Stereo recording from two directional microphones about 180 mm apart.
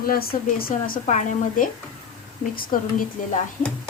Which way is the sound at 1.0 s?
45° left (ahead or behind).